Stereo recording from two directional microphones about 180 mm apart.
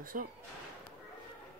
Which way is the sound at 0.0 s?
50° right (ahead or behind).